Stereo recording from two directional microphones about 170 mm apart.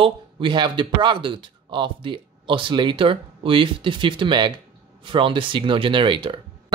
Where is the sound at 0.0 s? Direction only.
30° right (ahead or behind).